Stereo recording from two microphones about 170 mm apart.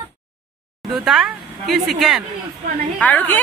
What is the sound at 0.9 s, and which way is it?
Speech, centre (ahead or behind).